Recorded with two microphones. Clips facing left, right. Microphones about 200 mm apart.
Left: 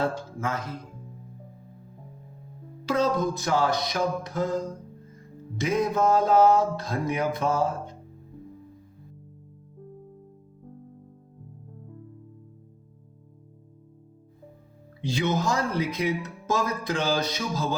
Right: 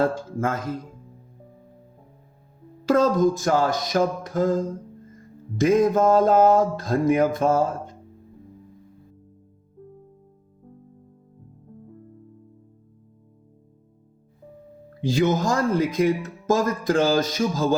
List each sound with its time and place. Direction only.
0.0 s speech: 50° right (ahead or behind)
2.8 s speech: 45° right (ahead or behind)
15.0 s speech: 45° right (ahead or behind)